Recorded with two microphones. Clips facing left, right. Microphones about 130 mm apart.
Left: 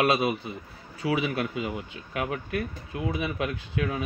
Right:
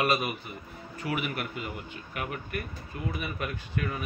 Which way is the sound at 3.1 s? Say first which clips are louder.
Left 5 dB; 90° left.